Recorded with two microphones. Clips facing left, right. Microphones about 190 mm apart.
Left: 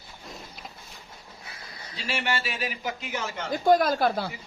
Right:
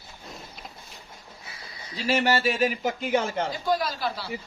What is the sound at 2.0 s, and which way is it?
Speech, 40° right (ahead or behind).